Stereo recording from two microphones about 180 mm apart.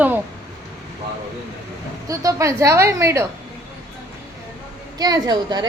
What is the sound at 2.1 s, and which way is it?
A woman's voice, 20° right (ahead or behind).